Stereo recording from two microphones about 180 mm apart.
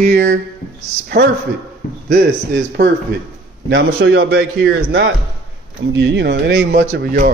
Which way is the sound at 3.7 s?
75° right (ahead or behind).